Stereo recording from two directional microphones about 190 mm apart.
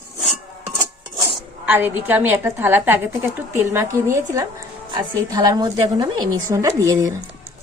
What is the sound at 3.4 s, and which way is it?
A woman's voice, 10° right (ahead or behind).